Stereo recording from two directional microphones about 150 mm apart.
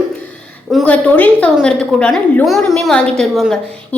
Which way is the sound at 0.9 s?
10° left (ahead or behind).